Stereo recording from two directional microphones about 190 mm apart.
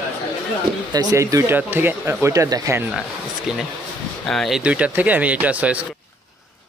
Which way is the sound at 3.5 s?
5° right (ahead or behind).